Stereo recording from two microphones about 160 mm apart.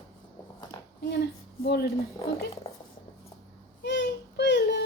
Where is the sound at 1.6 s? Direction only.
90° left.